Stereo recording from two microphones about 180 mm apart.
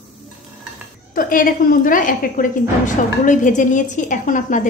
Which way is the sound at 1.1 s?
50° left (ahead or behind).